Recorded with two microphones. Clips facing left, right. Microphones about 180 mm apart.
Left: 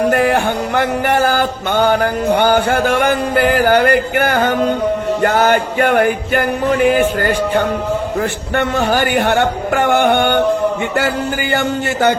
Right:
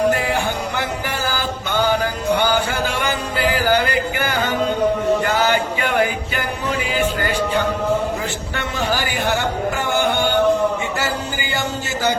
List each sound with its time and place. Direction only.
0.1 s music: 55° left (ahead or behind)
8.5 s a man's voice: 55° left (ahead or behind)